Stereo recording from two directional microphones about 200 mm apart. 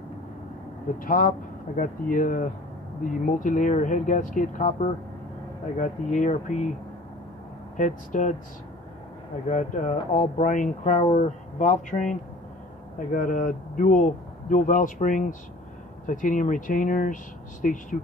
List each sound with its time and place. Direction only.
0.9 s speech: 45° left (ahead or behind)
7.7 s speech: 40° left (ahead or behind)
9.5 s speech: 35° left (ahead or behind)